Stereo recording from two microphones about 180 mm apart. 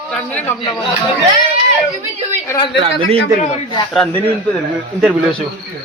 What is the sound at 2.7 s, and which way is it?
Speech, 30° right (ahead or behind).